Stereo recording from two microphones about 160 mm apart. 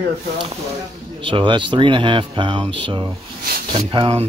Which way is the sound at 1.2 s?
30° right (ahead or behind).